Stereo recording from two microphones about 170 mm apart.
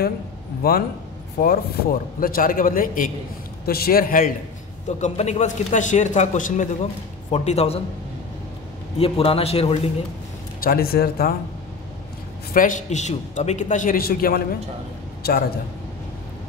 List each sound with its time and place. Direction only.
0.6 s a man's voice: 65° left (ahead or behind)
4.8 s speech: 45° left (ahead or behind)
8.9 s a man's voice: 35° left (ahead or behind)
10.6 s a man's voice: 60° left (ahead or behind)
12.5 s a man's voice: 50° left (ahead or behind); by 15.4 s 65° left (ahead or behind)